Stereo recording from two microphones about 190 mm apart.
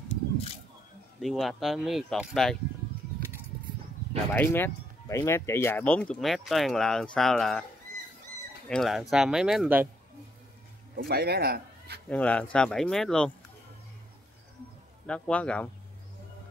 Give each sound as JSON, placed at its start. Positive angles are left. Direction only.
{"t": 1.2, "sound": "speech", "side_deg": 0}
{"t": 3.2, "sound": "a sound", "side_deg": -50}
{"t": 4.3, "sound": "speech", "side_deg": 10}
{"t": 8.6, "sound": "speech", "side_deg": 0}
{"t": 11.0, "sound": "speech", "side_deg": -55}
{"t": 12.1, "sound": "speech", "side_deg": 5}
{"t": 15.0, "sound": "speech", "side_deg": 5}